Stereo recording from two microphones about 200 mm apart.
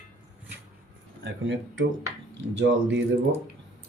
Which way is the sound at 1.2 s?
65° right (ahead or behind).